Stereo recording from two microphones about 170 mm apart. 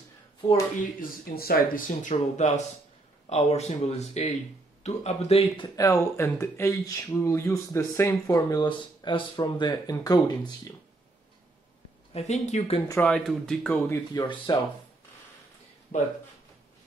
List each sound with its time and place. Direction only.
1.0 s speech: 60° left (ahead or behind); by 5.4 s 40° left (ahead or behind)
5.6 s speech: 20° left (ahead or behind)
12.1 s speech: 40° left (ahead or behind)
13.0 s speech: 5° left (ahead or behind)
13.8 s speech: 15° left (ahead or behind)
14.2 s speech: 30° left (ahead or behind)
15.9 s speech: 40° left (ahead or behind)